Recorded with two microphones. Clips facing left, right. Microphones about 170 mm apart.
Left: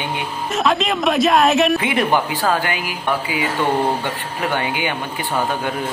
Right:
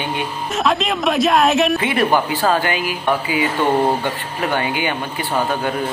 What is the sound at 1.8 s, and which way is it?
Speech, 15° left (ahead or behind).